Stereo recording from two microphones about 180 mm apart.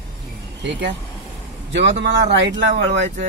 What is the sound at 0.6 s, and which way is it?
Speech, 75° right (ahead or behind).